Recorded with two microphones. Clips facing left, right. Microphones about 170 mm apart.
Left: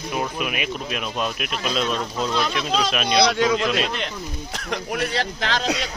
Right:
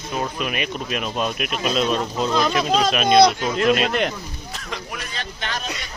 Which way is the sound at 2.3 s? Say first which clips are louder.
Right 5 dB; 45° right (ahead or behind).